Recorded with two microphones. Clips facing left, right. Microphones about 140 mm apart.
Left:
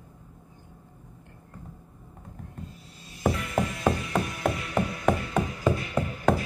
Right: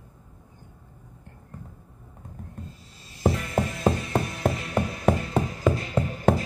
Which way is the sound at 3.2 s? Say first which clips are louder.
Right 2 dB; 30° right (ahead or behind).